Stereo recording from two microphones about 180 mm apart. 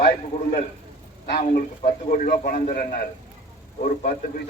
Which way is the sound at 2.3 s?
50° left (ahead or behind).